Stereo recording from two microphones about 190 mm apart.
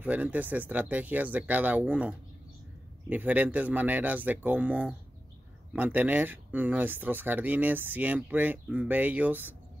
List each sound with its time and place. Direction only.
0.0 s speech: 10° right (ahead or behind)